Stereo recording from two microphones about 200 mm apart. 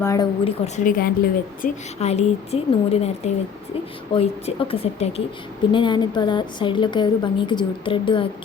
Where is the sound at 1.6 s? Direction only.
35° left (ahead or behind).